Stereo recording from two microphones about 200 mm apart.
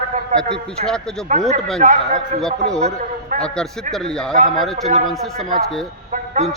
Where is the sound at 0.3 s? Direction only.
40° right (ahead or behind).